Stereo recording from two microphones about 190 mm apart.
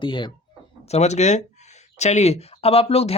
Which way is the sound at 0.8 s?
35° left (ahead or behind).